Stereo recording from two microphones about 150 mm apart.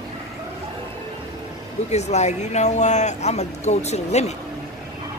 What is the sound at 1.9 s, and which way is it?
Speech, 50° left (ahead or behind).